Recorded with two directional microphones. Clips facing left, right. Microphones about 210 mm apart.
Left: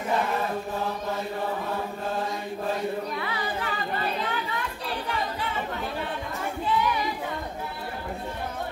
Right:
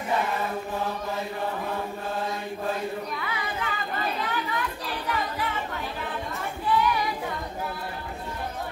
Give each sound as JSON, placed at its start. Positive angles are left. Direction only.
{"t": 3.2, "sound": "chatter", "side_deg": 30}